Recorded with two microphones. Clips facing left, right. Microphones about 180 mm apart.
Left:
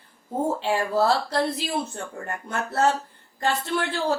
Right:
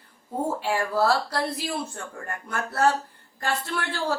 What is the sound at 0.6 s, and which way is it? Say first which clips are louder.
A woman's voice: left 1 dB; 20° left (ahead or behind).